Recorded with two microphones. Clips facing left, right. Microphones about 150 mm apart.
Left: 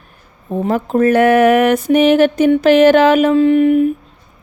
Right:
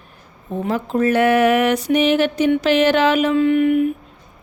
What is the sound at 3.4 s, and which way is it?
Speech, 35° left (ahead or behind).